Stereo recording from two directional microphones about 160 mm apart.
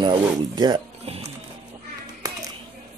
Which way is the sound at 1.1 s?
40° right (ahead or behind).